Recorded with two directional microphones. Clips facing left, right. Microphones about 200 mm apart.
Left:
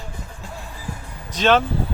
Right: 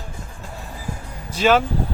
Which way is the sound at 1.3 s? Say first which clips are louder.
Right 1 dB; 10° right (ahead or behind).